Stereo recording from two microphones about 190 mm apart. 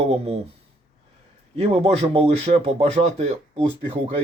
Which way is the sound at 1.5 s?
30° right (ahead or behind).